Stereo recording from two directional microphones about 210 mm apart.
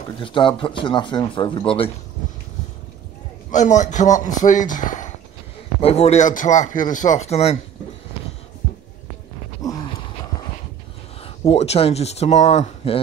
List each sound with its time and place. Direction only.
0.2 s speech: 25° left (ahead or behind)
3.4 s speech: 35° left (ahead or behind)
9.6 s a sound: 15° left (ahead or behind)
11.2 s speech: 30° left (ahead or behind)